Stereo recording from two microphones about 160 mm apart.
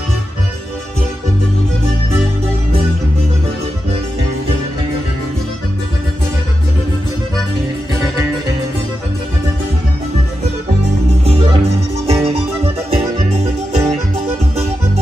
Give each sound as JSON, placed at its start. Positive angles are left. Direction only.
{"t": 11.2, "sound": "music", "side_deg": -35}